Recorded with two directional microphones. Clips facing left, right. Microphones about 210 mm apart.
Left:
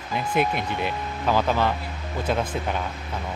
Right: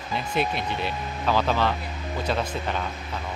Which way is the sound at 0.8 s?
15° left (ahead or behind).